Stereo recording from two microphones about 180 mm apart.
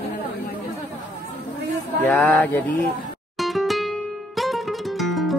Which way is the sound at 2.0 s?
10° left (ahead or behind).